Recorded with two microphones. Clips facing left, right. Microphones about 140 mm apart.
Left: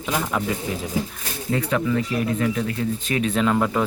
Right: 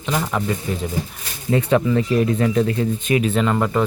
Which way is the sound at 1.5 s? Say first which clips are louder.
Right 5 dB; 30° right (ahead or behind).